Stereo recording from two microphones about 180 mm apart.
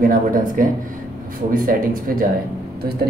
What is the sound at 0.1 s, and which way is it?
A man's voice, 50° right (ahead or behind).